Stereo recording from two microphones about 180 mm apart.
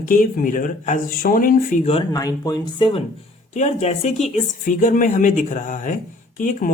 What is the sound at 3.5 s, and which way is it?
Speech, 40° left (ahead or behind).